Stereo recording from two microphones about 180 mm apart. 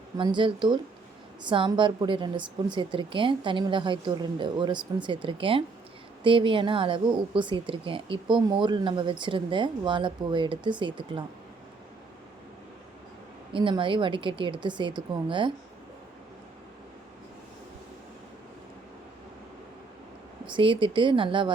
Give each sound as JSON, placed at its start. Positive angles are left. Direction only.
{"t": 0.2, "sound": "speech", "side_deg": -25}
{"t": 13.5, "sound": "speech", "side_deg": -30}
{"t": 20.5, "sound": "speech", "side_deg": -30}